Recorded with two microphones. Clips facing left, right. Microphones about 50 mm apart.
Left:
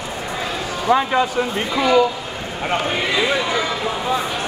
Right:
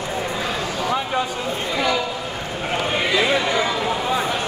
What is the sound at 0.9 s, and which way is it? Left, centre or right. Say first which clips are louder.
Speech: left 8 dB; left.